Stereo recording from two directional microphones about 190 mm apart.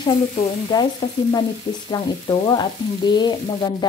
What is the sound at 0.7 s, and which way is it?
Sizzle, 20° left (ahead or behind).